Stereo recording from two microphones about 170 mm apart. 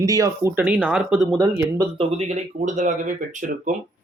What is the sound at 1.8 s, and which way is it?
Speech, 35° right (ahead or behind).